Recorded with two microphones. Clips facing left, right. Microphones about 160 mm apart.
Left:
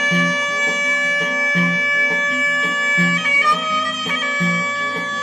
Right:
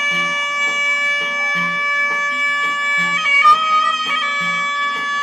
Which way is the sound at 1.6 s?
25° left (ahead or behind).